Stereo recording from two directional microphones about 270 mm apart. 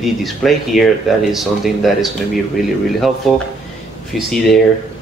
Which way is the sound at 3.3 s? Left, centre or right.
Centre.